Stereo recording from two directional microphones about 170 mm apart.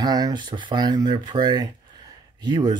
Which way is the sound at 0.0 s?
20° right (ahead or behind).